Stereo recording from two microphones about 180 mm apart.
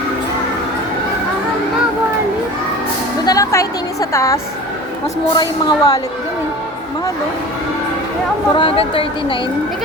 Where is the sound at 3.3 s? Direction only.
20° left (ahead or behind).